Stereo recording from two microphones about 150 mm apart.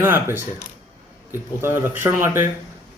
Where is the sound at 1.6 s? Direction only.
15° right (ahead or behind).